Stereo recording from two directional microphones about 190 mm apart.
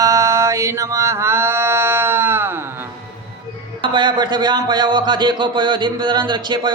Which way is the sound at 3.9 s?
25° right (ahead or behind).